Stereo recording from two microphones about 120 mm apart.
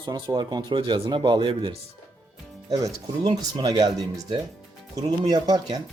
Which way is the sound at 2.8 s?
35° right (ahead or behind).